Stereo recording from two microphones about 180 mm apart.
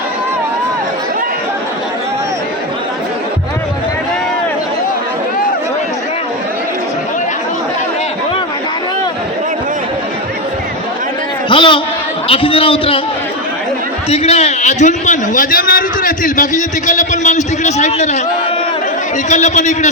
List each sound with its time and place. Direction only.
11.4 s a man's voice: 25° left (ahead or behind)
14.1 s a man's voice: 35° left (ahead or behind)
19.3 s a man's voice: 40° left (ahead or behind)